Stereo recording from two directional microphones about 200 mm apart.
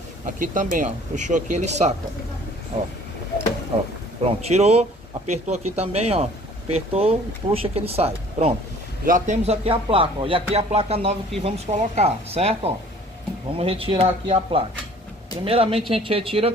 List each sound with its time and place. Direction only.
0.4 s speech: 40° right (ahead or behind)
4.2 s speech: 30° right (ahead or behind)
9.0 s speech: 40° right (ahead or behind)